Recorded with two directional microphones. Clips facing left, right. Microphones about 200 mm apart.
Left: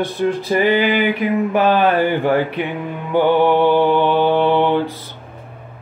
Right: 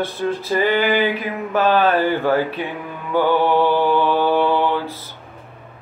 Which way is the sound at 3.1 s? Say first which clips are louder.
Left 3 dB; 20° left (ahead or behind).